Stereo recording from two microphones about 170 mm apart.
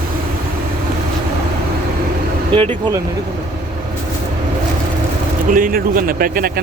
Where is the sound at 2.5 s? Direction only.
30° right (ahead or behind).